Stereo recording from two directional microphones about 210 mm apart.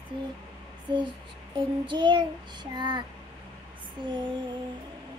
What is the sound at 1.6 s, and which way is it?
Child singing, 20° right (ahead or behind).